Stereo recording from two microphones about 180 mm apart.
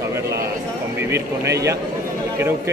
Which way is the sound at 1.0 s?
15° right (ahead or behind).